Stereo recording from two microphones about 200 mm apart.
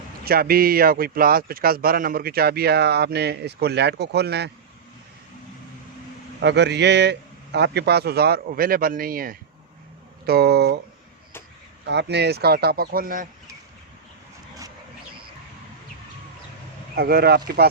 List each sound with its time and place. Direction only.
0.3 s speech: 50° right (ahead or behind)
6.4 s a man's voice: 60° right (ahead or behind)
11.9 s speech: 60° right (ahead or behind)
16.9 s speech: 50° right (ahead or behind)